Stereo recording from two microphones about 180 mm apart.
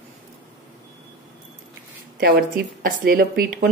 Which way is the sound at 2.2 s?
55° right (ahead or behind).